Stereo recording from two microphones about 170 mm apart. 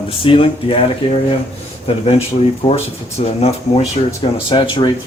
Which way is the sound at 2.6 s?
35° left (ahead or behind).